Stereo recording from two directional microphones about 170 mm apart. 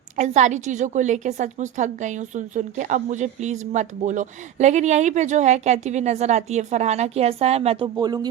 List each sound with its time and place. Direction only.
0.2 s a woman's voice: 45° right (ahead or behind); by 8.3 s 25° right (ahead or behind)